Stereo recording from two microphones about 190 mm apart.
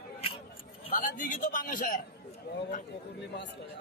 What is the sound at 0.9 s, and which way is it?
A man's voice, 45° left (ahead or behind).